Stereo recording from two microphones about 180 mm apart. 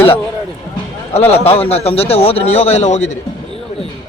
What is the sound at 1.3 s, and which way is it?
A man's voice, 35° left (ahead or behind).